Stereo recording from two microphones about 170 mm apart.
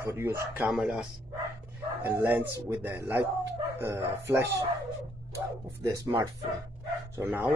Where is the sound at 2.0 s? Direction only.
10° right (ahead or behind).